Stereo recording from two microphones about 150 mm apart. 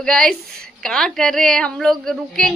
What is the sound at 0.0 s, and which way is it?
A woman's voice, 5° left (ahead or behind).